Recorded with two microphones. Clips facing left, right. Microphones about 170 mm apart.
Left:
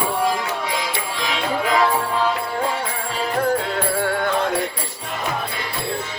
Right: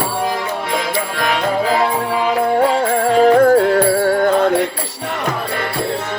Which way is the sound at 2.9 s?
50° right (ahead or behind).